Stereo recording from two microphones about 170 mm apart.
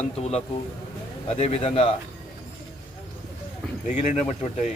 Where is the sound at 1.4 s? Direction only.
35° left (ahead or behind).